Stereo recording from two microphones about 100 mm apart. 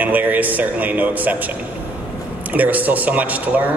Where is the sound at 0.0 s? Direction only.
15° right (ahead or behind).